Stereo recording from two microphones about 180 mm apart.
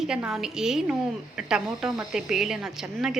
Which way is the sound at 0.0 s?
5° right (ahead or behind).